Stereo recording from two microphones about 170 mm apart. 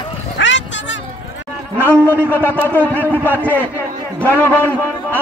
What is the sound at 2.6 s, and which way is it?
Speech, 10° left (ahead or behind).